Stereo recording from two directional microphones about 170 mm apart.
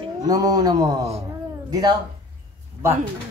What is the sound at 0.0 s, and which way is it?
Speech, 20° right (ahead or behind).